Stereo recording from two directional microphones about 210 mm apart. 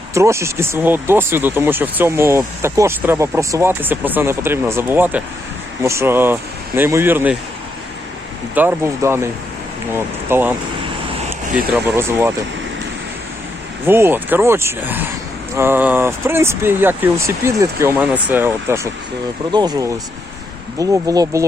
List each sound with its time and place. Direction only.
0.1 s speech: 15° right (ahead or behind)
8.5 s speech: 10° right (ahead or behind)
13.8 s speech: 10° right (ahead or behind)